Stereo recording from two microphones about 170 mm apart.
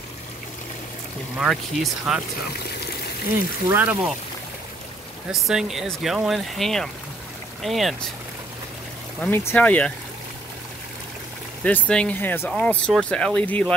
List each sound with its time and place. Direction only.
1.4 s speech: centre (ahead or behind)
3.6 s speech: 10° right (ahead or behind)
5.3 s speech: centre (ahead or behind)
9.2 s speech: 15° left (ahead or behind)
11.9 s speech: 10° left (ahead or behind)